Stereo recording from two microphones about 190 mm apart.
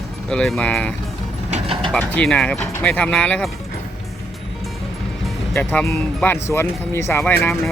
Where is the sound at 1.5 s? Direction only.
30° right (ahead or behind).